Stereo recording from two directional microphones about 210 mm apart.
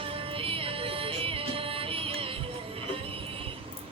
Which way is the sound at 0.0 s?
25° right (ahead or behind).